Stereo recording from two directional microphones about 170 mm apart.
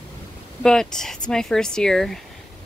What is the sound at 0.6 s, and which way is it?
Speech, 5° left (ahead or behind).